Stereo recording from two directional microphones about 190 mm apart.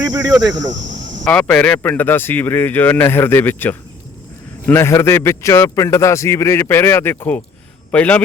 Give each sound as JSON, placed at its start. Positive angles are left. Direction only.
{"t": 0.0, "sound": "cricket", "side_deg": -20}
{"t": 0.4, "sound": "speech", "side_deg": -20}
{"t": 1.2, "sound": "a man's voice", "side_deg": 5}